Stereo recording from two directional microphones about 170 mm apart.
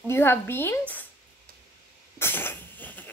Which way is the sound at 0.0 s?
15° left (ahead or behind).